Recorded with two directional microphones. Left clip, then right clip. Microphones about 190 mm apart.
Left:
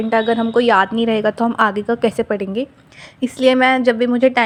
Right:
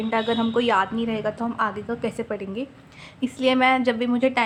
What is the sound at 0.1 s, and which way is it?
A woman's voice, 30° left (ahead or behind).